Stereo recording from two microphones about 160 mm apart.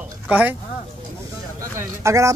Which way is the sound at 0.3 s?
10° right (ahead or behind).